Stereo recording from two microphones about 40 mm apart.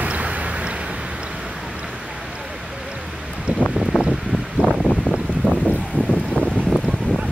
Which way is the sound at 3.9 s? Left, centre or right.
Left.